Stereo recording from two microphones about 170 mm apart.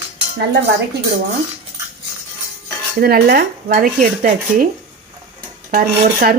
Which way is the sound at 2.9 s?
65° right (ahead or behind).